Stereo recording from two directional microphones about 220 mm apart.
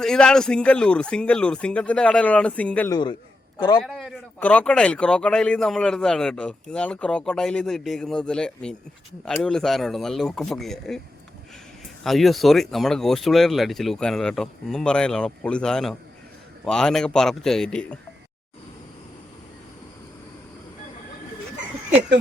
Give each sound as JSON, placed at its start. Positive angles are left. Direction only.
{"t": 0.0, "sound": "a man's voice", "side_deg": 5}
{"t": 3.6, "sound": "a man's voice", "side_deg": 20}
{"t": 3.8, "sound": "a man's voice", "side_deg": 0}
{"t": 12.0, "sound": "a man's voice", "side_deg": 0}